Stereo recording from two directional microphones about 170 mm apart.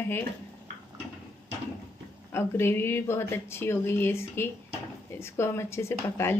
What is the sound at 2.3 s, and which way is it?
Speech, 15° left (ahead or behind).